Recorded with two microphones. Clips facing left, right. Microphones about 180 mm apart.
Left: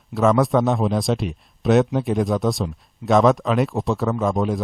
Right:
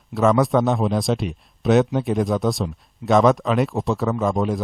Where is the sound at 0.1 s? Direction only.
Centre (ahead or behind).